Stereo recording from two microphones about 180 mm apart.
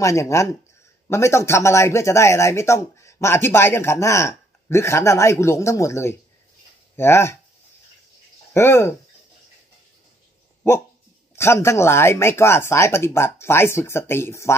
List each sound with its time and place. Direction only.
0.0 s speech: 15° left (ahead or behind)
8.5 s speech: 15° left (ahead or behind)
11.3 s speech: 15° left (ahead or behind)